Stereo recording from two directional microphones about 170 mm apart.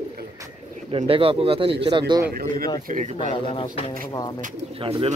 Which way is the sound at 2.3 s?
60° right (ahead or behind).